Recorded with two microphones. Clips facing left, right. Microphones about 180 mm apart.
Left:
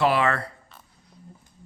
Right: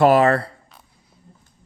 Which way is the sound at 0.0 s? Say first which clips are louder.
Right 8 dB; 45° right (ahead or behind).